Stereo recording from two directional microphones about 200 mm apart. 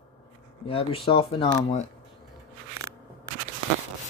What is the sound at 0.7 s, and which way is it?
Speech, 25° left (ahead or behind).